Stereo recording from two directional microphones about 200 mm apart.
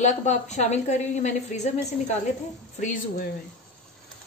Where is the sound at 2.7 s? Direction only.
40° left (ahead or behind).